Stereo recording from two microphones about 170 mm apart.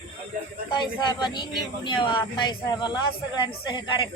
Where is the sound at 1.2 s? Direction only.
25° left (ahead or behind).